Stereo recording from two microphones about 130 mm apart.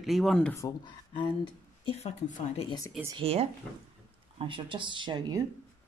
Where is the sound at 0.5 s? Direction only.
25° left (ahead or behind).